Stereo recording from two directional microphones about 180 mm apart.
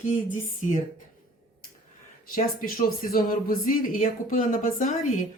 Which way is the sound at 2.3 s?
55° left (ahead or behind).